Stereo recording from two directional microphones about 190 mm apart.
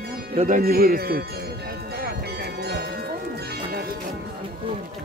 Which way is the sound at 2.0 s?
55° right (ahead or behind).